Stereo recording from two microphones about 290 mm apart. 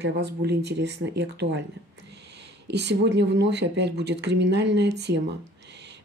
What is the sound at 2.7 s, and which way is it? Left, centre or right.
Speech, right.